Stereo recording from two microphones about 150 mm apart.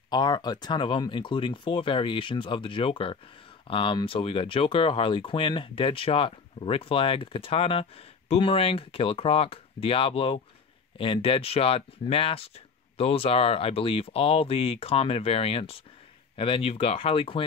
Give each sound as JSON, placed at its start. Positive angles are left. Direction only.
{"t": 0.1, "sound": "speech", "side_deg": 30}